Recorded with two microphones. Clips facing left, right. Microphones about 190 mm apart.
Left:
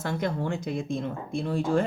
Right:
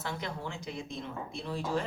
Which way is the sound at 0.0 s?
50° left (ahead or behind).